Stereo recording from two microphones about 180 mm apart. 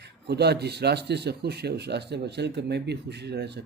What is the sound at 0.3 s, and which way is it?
A man's voice, 65° right (ahead or behind).